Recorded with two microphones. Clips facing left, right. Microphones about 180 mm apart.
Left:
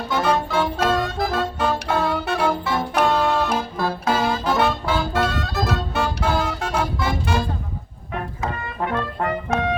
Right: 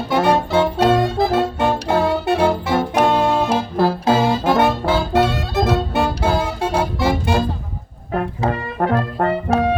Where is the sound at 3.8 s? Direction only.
25° right (ahead or behind).